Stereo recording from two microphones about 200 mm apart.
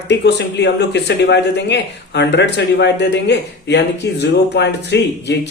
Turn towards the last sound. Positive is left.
turn(degrees=60)  # may be behind; listen again after turning